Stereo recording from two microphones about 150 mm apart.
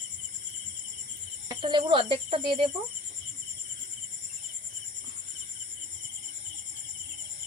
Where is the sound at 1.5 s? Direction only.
30° right (ahead or behind).